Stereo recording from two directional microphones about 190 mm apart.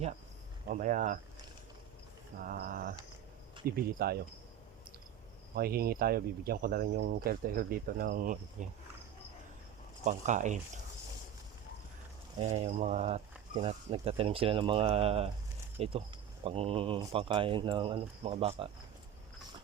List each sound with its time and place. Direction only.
0.7 s speech: 40° right (ahead or behind)
2.4 s speech: 50° right (ahead or behind)
5.5 s speech: 55° right (ahead or behind)
10.0 s speech: 40° right (ahead or behind)
12.4 s speech: 35° right (ahead or behind)